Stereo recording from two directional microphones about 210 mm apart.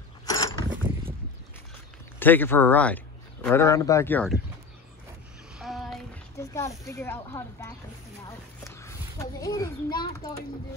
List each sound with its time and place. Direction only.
0.3 s pulleys: 15° left (ahead or behind)
2.1 s speech: 10° left (ahead or behind)
5.6 s music: centre (ahead or behind)
6.3 s a child's voice: 15° left (ahead or behind)